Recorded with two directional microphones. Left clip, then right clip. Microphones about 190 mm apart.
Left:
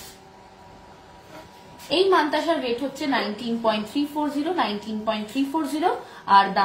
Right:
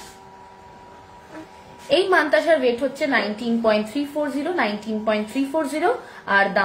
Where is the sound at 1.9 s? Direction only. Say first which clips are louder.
Right 2 dB; 35° right (ahead or behind).